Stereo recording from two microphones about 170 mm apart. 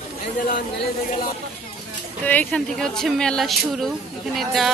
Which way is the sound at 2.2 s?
10° left (ahead or behind).